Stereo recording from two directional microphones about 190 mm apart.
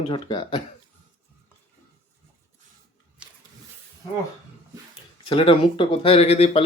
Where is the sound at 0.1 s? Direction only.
25° left (ahead or behind).